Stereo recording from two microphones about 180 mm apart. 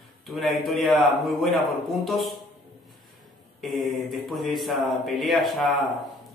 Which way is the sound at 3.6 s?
Centre (ahead or behind).